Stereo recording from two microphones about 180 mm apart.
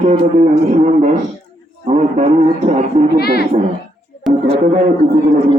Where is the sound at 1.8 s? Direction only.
40° right (ahead or behind).